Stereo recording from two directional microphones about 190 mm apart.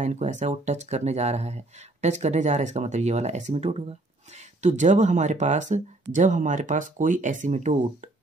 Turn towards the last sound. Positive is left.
turn(degrees=-40)  # may be behind; listen again after turning